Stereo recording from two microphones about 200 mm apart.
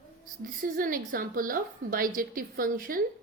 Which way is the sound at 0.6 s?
45° right (ahead or behind).